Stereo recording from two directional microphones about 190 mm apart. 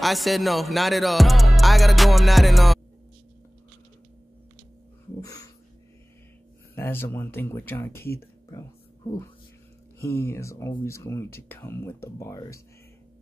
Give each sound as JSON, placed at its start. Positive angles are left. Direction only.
{"t": 0.0, "sound": "music", "side_deg": 0}
{"t": 6.7, "sound": "speech", "side_deg": 10}
{"t": 8.0, "sound": "speech", "side_deg": 55}
{"t": 8.5, "sound": "a sound", "side_deg": 15}
{"t": 10.0, "sound": "speech", "side_deg": 10}